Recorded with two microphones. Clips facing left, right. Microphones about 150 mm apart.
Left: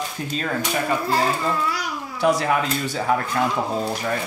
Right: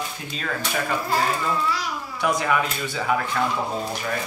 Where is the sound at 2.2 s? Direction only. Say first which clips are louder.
Left 3 dB; 35° left (ahead or behind).